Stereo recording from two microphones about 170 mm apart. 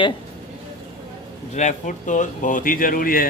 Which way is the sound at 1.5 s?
45° left (ahead or behind).